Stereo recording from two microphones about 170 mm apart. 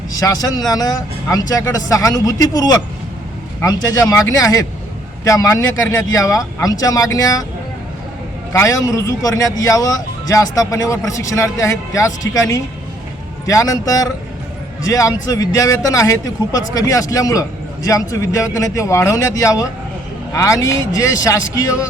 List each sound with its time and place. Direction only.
0.2 s a man's voice: 20° left (ahead or behind)
8.5 s a man's voice: 20° left (ahead or behind)